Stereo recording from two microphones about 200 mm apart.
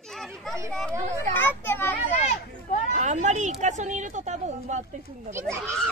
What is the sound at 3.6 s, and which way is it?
Speech, 35° right (ahead or behind).